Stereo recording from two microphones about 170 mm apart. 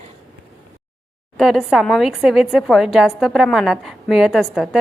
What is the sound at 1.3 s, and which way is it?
A woman's voice, centre (ahead or behind).